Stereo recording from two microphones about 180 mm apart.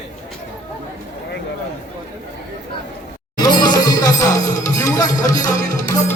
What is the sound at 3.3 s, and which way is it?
Music, 20° left (ahead or behind).